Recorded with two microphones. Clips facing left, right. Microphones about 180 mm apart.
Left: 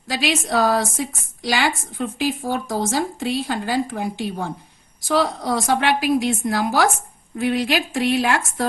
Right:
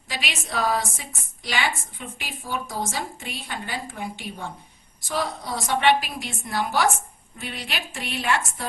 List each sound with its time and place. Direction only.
0.1 s a woman's voice: 90° left